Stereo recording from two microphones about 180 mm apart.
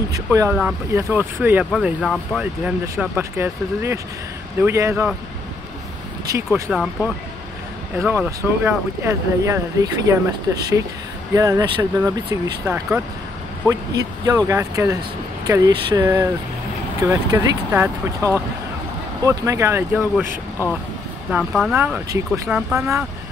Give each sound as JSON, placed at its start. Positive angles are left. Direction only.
{"t": 0.1, "sound": "speech", "side_deg": -15}
{"t": 2.6, "sound": "speech", "side_deg": -10}
{"t": 6.7, "sound": "speech", "side_deg": -5}
{"t": 21.3, "sound": "speech", "side_deg": -5}